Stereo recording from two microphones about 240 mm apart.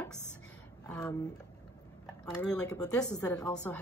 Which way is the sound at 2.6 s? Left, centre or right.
Centre.